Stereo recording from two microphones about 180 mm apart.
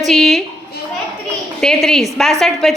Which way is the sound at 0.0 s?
Centre (ahead or behind).